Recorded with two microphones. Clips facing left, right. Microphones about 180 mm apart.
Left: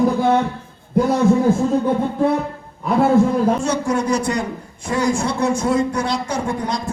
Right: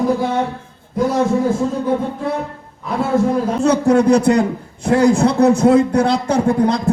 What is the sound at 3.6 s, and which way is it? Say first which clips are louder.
A man's voice: right 7 dB; 60° right (ahead or behind).